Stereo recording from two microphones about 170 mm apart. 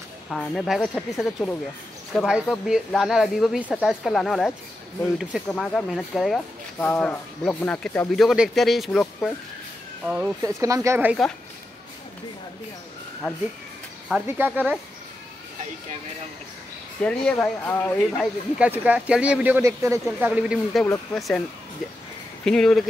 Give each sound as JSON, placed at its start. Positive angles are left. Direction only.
{"t": 0.3, "sound": "speech", "side_deg": 0}
{"t": 10.4, "sound": "speech", "side_deg": -20}
{"t": 13.2, "sound": "speech", "side_deg": -5}
{"t": 17.0, "sound": "speech", "side_deg": 5}
{"t": 18.6, "sound": "speech", "side_deg": -10}
{"t": 20.8, "sound": "speech", "side_deg": 10}
{"t": 21.2, "sound": "speech", "side_deg": 0}